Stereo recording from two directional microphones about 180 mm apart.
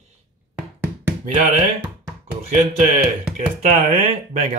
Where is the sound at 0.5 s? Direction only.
10° right (ahead or behind).